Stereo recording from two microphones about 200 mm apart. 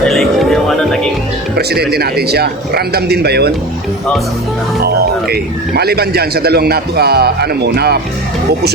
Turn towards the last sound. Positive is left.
turn(degrees=-55)  # may be behind; listen again after turning